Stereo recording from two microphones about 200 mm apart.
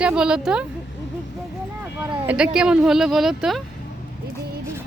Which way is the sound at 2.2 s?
5° right (ahead or behind).